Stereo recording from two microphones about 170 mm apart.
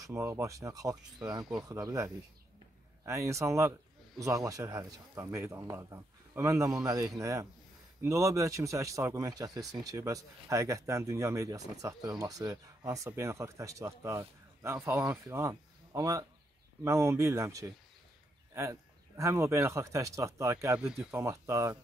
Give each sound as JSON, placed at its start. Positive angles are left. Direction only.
{"t": 0.0, "sound": "speech", "side_deg": -15}